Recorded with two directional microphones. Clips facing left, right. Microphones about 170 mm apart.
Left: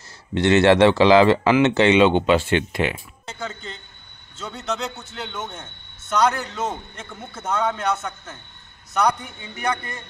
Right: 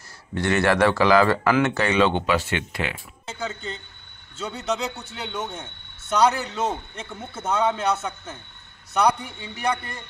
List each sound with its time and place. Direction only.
0.3 s speech: 25° left (ahead or behind)
3.3 s a man's voice: 5° right (ahead or behind)
9.7 s a man's voice: 10° right (ahead or behind)